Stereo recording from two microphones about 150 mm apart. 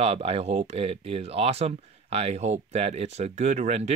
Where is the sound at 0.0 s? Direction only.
45° right (ahead or behind).